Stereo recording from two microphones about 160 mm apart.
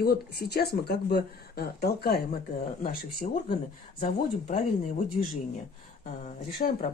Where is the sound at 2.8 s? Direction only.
65° left (ahead or behind).